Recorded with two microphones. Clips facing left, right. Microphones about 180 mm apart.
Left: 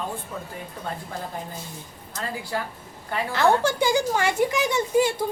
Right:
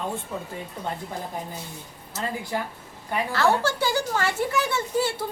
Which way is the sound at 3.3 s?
15° left (ahead or behind).